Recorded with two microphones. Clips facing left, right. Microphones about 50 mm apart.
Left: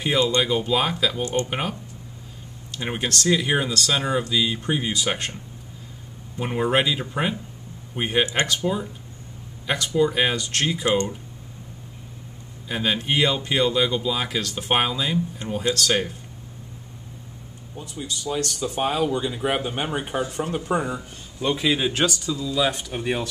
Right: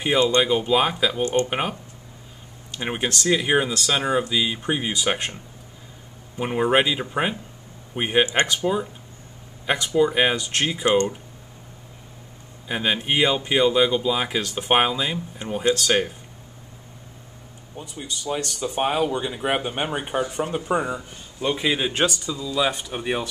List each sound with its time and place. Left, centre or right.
0.4 s speech: centre
2.8 s speech: centre
9.9 s speech: centre
12.6 s speech: centre
17.7 s speech: centre